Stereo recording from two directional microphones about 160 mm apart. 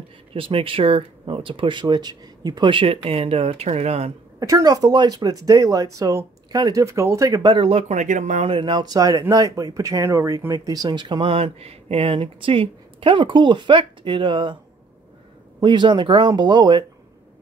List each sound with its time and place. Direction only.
0.3 s speech: 35° right (ahead or behind)
4.4 s speech: 20° right (ahead or behind)
7.5 s speech: 35° right (ahead or behind)
15.6 s speech: 30° right (ahead or behind)